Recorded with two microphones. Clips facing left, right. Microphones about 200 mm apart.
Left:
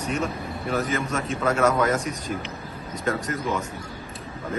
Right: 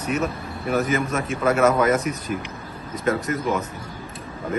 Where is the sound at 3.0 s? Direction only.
5° right (ahead or behind).